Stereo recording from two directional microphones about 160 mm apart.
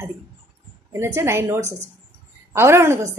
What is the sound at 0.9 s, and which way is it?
A woman's voice, 15° right (ahead or behind).